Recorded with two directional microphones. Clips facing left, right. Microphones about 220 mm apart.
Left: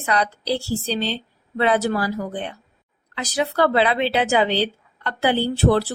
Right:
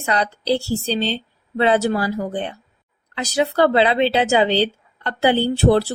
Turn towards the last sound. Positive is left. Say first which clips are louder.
# right 3 dB
turn(degrees=-25)  # may be behind; listen again after turning